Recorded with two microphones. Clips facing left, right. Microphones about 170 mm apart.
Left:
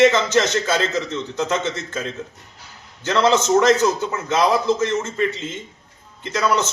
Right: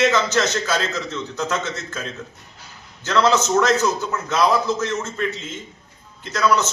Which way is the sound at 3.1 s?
25° left (ahead or behind).